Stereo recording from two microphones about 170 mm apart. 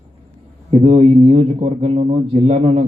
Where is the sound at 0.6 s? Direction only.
35° right (ahead or behind).